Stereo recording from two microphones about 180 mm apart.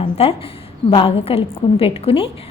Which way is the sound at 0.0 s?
30° left (ahead or behind).